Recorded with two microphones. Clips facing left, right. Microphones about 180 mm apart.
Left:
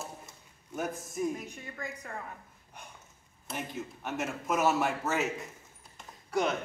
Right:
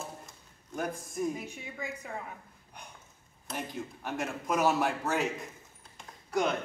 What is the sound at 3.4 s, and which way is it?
Speech, 5° left (ahead or behind).